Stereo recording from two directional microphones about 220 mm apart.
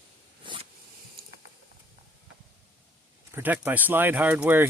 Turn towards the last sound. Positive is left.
turn(degrees=-5)  # may be behind; listen again after turning